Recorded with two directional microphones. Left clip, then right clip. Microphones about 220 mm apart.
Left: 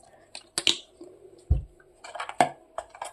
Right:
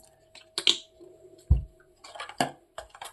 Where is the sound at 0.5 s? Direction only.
40° left (ahead or behind).